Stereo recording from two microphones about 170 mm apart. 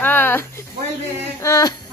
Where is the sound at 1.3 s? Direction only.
20° left (ahead or behind).